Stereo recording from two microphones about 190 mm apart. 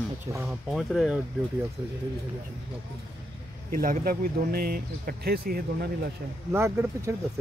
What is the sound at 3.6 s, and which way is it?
Speech, 50° right (ahead or behind).